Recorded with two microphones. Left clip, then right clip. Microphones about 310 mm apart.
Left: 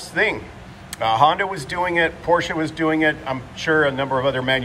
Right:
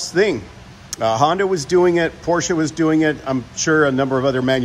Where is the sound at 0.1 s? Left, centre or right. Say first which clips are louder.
Right 2 dB; right.